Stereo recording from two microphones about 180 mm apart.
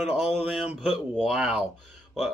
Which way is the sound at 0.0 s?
5° right (ahead or behind).